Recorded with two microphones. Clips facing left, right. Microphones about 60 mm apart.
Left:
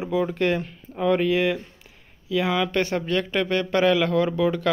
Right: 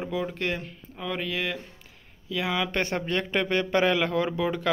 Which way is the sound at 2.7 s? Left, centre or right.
Right.